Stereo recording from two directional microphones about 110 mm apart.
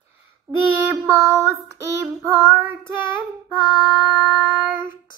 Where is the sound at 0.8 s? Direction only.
25° right (ahead or behind).